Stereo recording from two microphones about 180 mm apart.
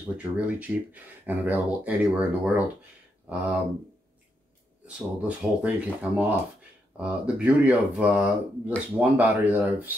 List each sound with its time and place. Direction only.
0.2 s speech: 10° right (ahead or behind)
4.8 s speech: 5° right (ahead or behind)